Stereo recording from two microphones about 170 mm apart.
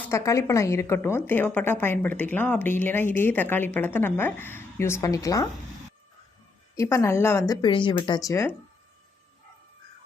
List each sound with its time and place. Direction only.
0.0 s a woman's voice: 15° left (ahead or behind)
6.7 s a woman's voice: 15° left (ahead or behind)